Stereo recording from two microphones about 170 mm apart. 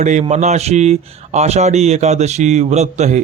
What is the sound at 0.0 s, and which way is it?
Speech, 45° right (ahead or behind).